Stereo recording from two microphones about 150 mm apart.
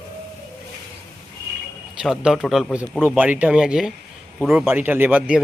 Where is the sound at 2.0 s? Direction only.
5° right (ahead or behind).